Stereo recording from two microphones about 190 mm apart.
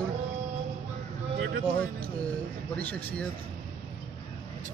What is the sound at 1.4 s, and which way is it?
Speech, 60° right (ahead or behind).